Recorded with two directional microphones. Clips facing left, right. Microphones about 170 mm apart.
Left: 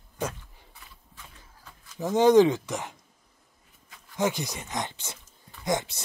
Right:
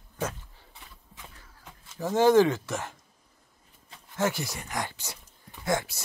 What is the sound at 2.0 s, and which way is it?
Speech, 20° left (ahead or behind).